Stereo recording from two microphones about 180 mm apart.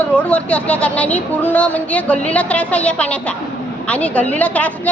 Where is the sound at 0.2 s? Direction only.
5° left (ahead or behind).